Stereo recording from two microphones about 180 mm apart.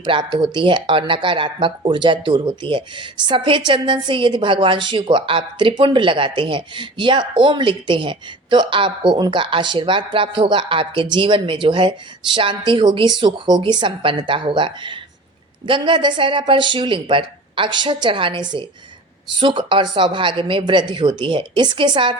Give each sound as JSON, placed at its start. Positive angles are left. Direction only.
{"t": 0.0, "sound": "speech", "side_deg": -25}